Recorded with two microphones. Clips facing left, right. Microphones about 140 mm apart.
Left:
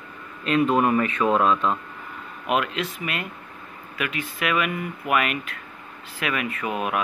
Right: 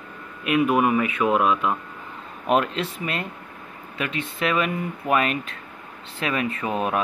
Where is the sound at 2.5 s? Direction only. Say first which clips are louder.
Right 3 dB; 35° right (ahead or behind).